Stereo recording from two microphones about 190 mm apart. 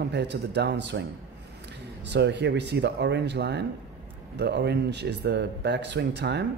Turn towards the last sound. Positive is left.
turn(degrees=-60)  # may be behind; listen again after turning